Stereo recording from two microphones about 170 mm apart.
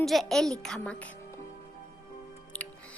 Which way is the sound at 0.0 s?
Centre (ahead or behind).